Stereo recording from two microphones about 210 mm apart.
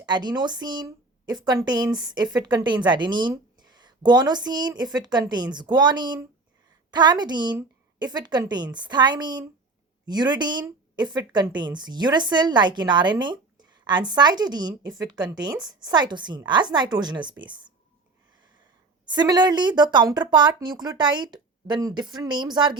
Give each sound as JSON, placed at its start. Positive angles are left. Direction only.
{"t": 0.0, "sound": "speech", "side_deg": -20}
{"t": 19.0, "sound": "speech", "side_deg": -20}